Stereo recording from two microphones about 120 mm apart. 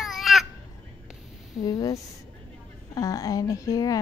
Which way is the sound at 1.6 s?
30° left (ahead or behind).